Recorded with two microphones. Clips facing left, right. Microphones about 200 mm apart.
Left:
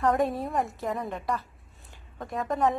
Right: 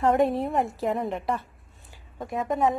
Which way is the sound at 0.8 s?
25° right (ahead or behind).